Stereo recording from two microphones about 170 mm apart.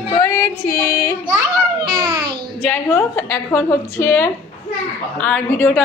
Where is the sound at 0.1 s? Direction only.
20° left (ahead or behind).